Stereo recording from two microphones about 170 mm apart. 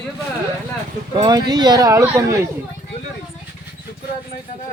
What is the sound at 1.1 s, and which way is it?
Speech, 25° right (ahead or behind).